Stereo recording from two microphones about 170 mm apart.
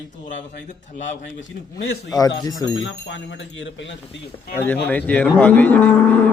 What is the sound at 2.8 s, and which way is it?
Speech, 90° left.